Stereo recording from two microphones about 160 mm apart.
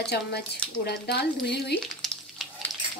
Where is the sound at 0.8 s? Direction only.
90° left.